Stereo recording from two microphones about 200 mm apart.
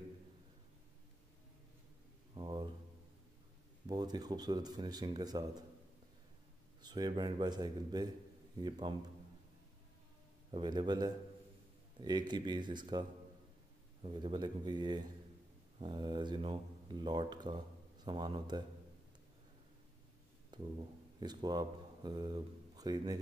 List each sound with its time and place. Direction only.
2.3 s a sound: 20° right (ahead or behind)
3.8 s speech: 20° right (ahead or behind)
6.8 s speech: 20° right (ahead or behind)
10.5 s speech: 20° right (ahead or behind)
14.0 s speech: 25° right (ahead or behind)
20.5 s speech: 20° right (ahead or behind)